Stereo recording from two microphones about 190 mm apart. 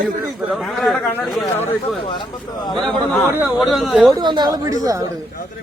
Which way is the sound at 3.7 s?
Centre (ahead or behind).